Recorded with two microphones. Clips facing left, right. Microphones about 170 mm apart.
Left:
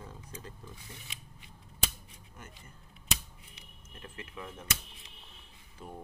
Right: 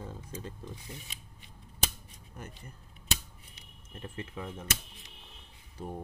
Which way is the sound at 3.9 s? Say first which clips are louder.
Right 5 dB; 30° right (ahead or behind).